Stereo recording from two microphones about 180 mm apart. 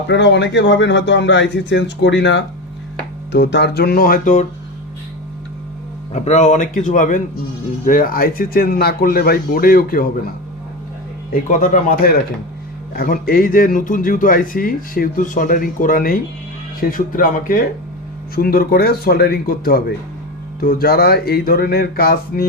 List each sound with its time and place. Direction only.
0.1 s speech: 75° left (ahead or behind); by 4.4 s 50° left (ahead or behind)
6.1 s speech: 40° left (ahead or behind)
11.3 s speech: 50° left (ahead or behind)